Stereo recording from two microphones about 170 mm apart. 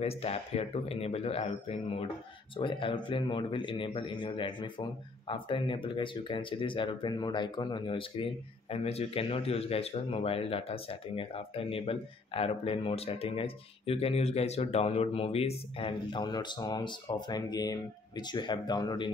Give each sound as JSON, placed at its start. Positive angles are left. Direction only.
{"t": 0.0, "sound": "speech", "side_deg": 35}